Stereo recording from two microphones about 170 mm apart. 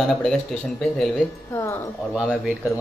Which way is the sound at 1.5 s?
15° left (ahead or behind).